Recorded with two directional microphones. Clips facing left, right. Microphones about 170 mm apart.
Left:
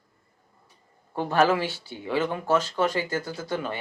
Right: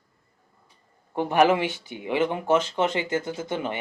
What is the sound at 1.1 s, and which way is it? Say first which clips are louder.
Speech: right 2 dB; 15° right (ahead or behind).